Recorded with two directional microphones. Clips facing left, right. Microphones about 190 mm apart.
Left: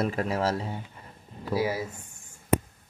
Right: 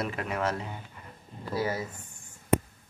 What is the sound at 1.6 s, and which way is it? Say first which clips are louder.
Speech: left 2 dB; 10° left (ahead or behind).